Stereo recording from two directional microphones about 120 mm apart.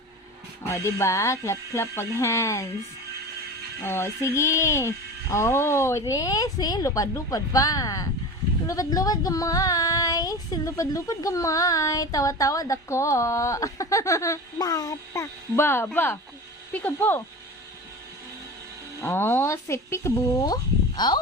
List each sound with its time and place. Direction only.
0.6 s speech: 25° left (ahead or behind)
3.8 s speech: 20° left (ahead or behind)
19.0 s speech: 20° left (ahead or behind); by 21.2 s 35° left (ahead or behind)